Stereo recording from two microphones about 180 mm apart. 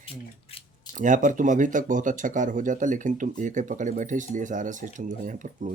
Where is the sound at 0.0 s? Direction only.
30° left (ahead or behind).